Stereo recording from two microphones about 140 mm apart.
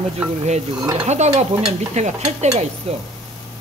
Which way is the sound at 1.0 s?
55° right (ahead or behind).